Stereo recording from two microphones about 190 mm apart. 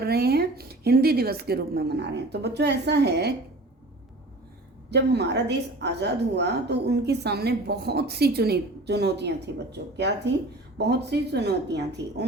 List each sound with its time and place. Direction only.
0.0 s a woman's voice: 55° right (ahead or behind)
4.9 s a woman's voice: 60° right (ahead or behind)